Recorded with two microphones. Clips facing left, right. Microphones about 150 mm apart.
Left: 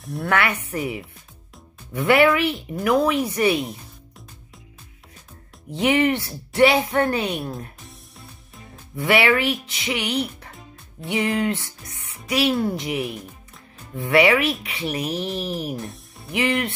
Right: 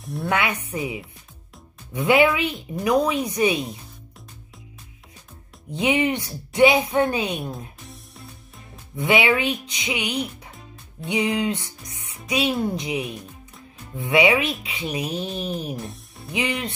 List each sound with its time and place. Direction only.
0.2 s speech: 15° right (ahead or behind)
5.7 s speech: 15° right (ahead or behind)
8.9 s speech: 20° right (ahead or behind)
15.7 s music: centre (ahead or behind)
16.3 s speech: 20° right (ahead or behind)